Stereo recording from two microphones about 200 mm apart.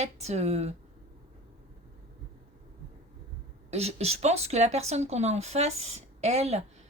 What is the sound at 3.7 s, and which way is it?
Speech, 30° right (ahead or behind).